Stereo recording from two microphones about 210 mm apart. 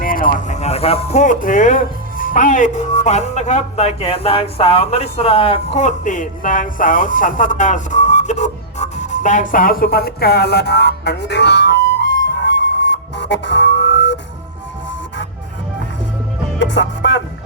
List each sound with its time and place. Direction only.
0.0 s speech: 40° left (ahead or behind); by 14.2 s 55° left (ahead or behind)
16.6 s music: 60° left (ahead or behind)